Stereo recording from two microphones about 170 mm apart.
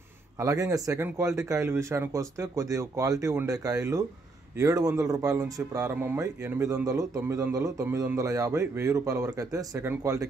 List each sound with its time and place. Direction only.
0.4 s speech: 20° right (ahead or behind)